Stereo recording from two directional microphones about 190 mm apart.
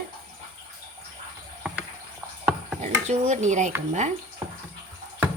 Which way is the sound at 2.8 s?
40° right (ahead or behind).